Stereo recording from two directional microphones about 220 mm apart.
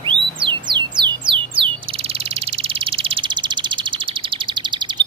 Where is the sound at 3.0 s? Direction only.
25° right (ahead or behind).